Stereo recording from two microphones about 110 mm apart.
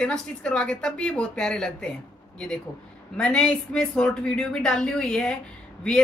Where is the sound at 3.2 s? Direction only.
10° left (ahead or behind).